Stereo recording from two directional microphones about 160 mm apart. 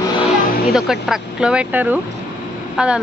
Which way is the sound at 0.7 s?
5° right (ahead or behind).